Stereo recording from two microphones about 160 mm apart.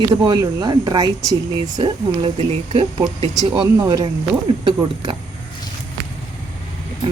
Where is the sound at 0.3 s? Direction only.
25° right (ahead or behind).